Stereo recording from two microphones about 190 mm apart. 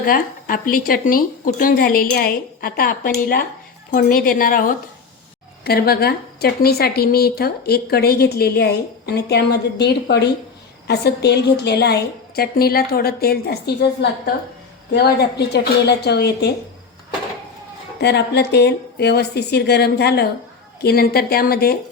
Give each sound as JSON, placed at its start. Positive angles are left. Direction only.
{"t": 0.0, "sound": "a woman's voice", "side_deg": 50}
{"t": 18.0, "sound": "a woman's voice", "side_deg": 60}